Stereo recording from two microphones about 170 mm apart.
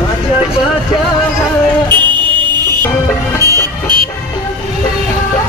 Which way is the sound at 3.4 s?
20° right (ahead or behind).